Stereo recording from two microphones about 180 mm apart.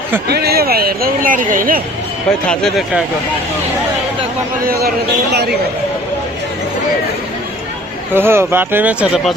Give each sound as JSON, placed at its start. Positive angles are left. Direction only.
{"t": 0.3, "sound": "speech", "side_deg": -60}
{"t": 2.5, "sound": "speech", "side_deg": 0}
{"t": 4.6, "sound": "a man's voice", "side_deg": -55}
{"t": 5.3, "sound": "speech", "side_deg": -65}
{"t": 8.1, "sound": "speech", "side_deg": -15}